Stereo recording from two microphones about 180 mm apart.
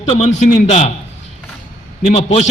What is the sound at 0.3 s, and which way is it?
Speech, 40° left (ahead or behind).